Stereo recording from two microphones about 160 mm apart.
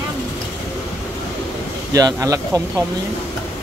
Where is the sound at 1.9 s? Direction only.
20° right (ahead or behind).